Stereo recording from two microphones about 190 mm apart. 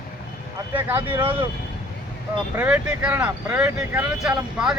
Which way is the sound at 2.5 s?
10° right (ahead or behind).